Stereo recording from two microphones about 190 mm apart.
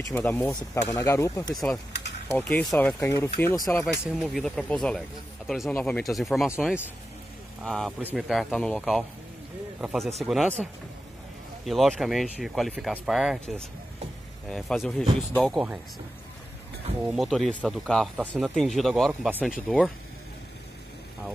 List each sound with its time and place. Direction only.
0.0 s speech: 10° left (ahead or behind)
1.5 s speech: centre (ahead or behind)
4.0 s speech: centre (ahead or behind)
11.6 s speech: centre (ahead or behind)
17.0 s speech: 5° right (ahead or behind)